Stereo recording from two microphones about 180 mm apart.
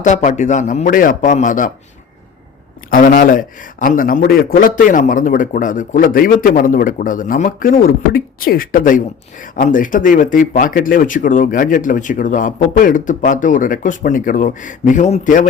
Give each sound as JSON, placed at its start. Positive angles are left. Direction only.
{"t": 0.0, "sound": "a man's voice", "side_deg": 40}
{"t": 2.9, "sound": "a man's voice", "side_deg": 50}